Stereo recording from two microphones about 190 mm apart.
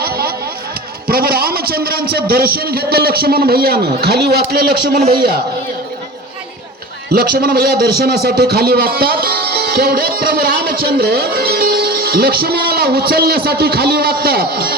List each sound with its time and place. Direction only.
0.0 s a sound: 50° right (ahead or behind)
1.0 s a man's voice: 50° right (ahead or behind)
7.1 s a man's voice: 55° right (ahead or behind)